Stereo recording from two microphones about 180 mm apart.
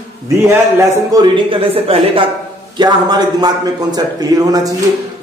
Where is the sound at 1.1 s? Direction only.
25° right (ahead or behind).